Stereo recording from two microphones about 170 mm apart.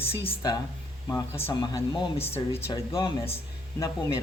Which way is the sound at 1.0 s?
20° left (ahead or behind).